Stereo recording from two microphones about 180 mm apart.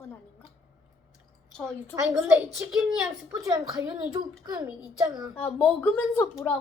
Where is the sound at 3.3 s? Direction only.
20° right (ahead or behind).